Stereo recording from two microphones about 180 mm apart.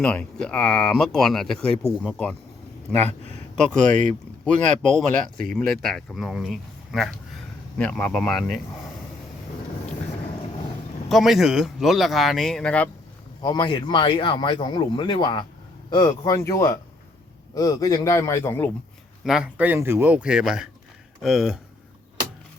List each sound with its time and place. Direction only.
0.0 s a man's voice: 5° left (ahead or behind)
3.6 s speech: 5° left (ahead or behind)
11.1 s speech: centre (ahead or behind)
13.4 s a man's voice: 25° left (ahead or behind)
19.2 s speech: 5° right (ahead or behind)